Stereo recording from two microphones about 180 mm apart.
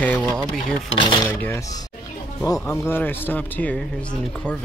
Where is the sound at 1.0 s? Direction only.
25° left (ahead or behind).